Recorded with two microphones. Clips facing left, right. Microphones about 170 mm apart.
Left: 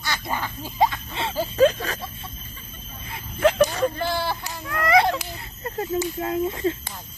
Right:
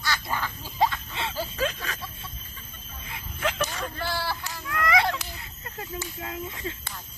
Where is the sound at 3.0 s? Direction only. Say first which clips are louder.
Left 10 dB; 40° left (ahead or behind).